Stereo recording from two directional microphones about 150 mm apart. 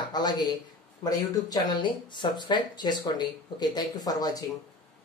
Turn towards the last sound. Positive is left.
turn(degrees=25)  # may be behind; listen again after turning